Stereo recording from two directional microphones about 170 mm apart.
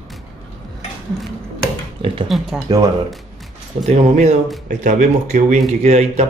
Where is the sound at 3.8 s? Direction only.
40° right (ahead or behind).